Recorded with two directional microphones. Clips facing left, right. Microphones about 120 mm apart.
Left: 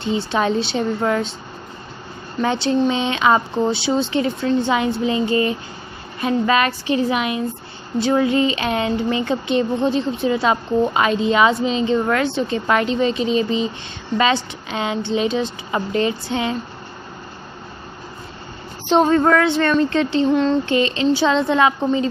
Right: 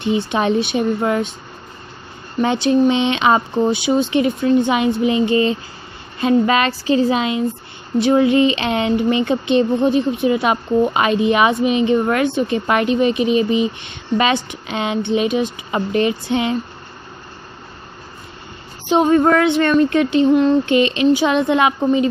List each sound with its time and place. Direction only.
0.0 s speech: 15° right (ahead or behind)
2.4 s speech: 15° right (ahead or behind)
18.9 s speech: 15° right (ahead or behind)